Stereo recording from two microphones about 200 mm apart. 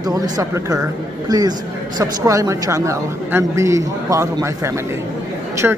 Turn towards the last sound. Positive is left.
turn(degrees=-10)  # may be behind; listen again after turning